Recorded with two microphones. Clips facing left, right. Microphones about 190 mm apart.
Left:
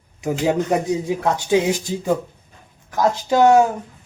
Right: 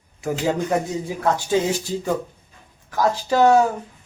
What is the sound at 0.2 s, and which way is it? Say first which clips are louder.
Speech: left 3 dB; 15° left (ahead or behind).